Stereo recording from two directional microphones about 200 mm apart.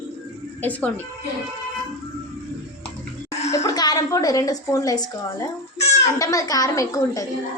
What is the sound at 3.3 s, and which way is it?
Music, 35° left (ahead or behind).